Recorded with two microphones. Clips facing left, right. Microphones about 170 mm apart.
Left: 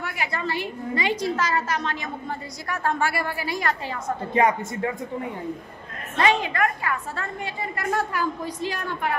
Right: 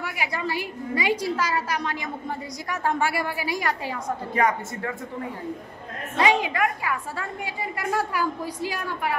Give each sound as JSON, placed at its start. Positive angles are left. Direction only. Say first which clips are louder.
{"t": 0.0, "sound": "a woman's voice", "louder": "even", "side_deg": -10}
{"t": 4.3, "sound": "speech", "louder": "left 3 dB", "side_deg": 20}
{"t": 6.1, "sound": "a woman's voice", "louder": "even", "side_deg": -10}